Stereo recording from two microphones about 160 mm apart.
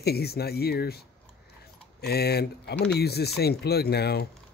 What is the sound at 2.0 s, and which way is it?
Speech, 90° left.